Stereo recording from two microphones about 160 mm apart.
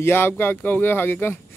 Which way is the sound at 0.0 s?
15° left (ahead or behind).